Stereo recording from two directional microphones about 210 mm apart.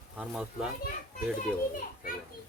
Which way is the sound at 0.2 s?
5° right (ahead or behind).